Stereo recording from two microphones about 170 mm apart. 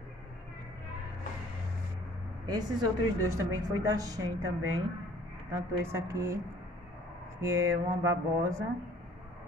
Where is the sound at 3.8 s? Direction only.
20° right (ahead or behind).